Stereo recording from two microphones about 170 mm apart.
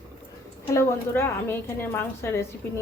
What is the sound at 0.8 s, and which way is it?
A woman's voice, 15° left (ahead or behind).